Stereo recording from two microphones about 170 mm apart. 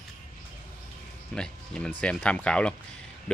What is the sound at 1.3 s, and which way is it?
Music, 5° left (ahead or behind).